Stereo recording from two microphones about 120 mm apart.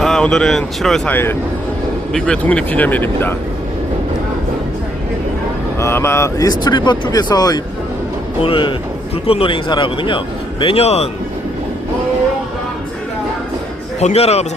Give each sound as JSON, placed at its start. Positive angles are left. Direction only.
{"t": 0.0, "sound": "speech", "side_deg": 5}
{"t": 1.1, "sound": "speech", "side_deg": 20}
{"t": 2.1, "sound": "speech", "side_deg": 5}
{"t": 5.8, "sound": "speech", "side_deg": 20}
{"t": 8.4, "sound": "a man's voice", "side_deg": 45}
{"t": 14.0, "sound": "a man's voice", "side_deg": 60}